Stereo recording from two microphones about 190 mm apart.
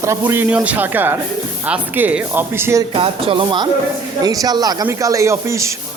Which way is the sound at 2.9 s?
25° right (ahead or behind).